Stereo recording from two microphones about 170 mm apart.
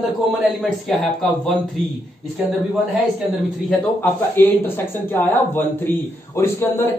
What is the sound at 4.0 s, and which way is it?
Speech, 10° left (ahead or behind).